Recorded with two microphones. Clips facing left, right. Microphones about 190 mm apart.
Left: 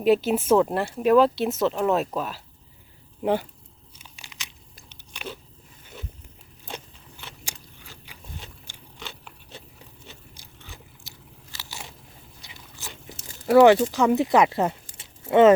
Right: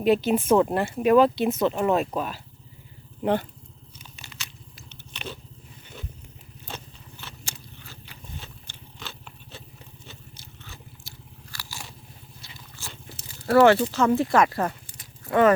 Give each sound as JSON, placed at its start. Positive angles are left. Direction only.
{"t": 0.0, "sound": "speech", "side_deg": 5}
{"t": 3.9, "sound": "a sound", "side_deg": 15}
{"t": 4.9, "sound": "biting", "side_deg": 10}
{"t": 6.7, "sound": "biting", "side_deg": 10}
{"t": 8.6, "sound": "a sound", "side_deg": 10}
{"t": 10.3, "sound": "biting", "side_deg": 15}
{"t": 11.5, "sound": "crunch", "side_deg": 20}
{"t": 12.4, "sound": "biting", "side_deg": 15}
{"t": 13.4, "sound": "speech", "side_deg": 15}
{"t": 14.9, "sound": "a sound", "side_deg": 25}